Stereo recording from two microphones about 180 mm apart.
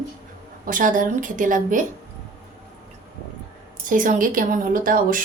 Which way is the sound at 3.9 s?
45° right (ahead or behind).